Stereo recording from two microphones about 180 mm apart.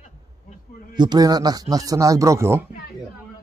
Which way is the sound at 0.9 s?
25° right (ahead or behind).